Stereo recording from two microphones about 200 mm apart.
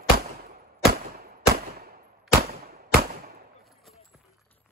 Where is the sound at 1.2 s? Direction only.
50° right (ahead or behind).